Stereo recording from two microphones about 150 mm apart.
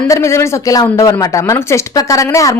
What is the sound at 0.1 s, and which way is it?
Speech, 20° left (ahead or behind).